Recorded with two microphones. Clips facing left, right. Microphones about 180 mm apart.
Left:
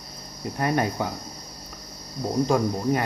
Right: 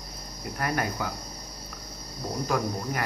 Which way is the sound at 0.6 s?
25° left (ahead or behind).